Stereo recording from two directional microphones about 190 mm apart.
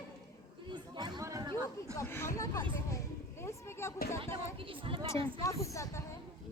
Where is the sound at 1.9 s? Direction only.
15° left (ahead or behind).